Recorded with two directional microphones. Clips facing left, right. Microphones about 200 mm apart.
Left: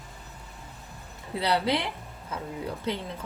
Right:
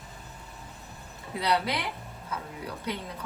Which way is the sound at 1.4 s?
30° left (ahead or behind).